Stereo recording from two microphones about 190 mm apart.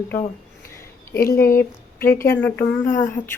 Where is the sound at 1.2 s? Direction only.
15° left (ahead or behind).